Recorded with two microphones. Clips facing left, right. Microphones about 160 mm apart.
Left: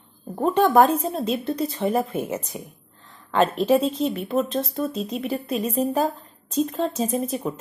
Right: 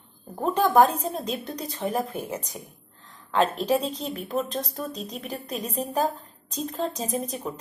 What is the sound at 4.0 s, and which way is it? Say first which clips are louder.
Speech: left 6 dB; centre (ahead or behind).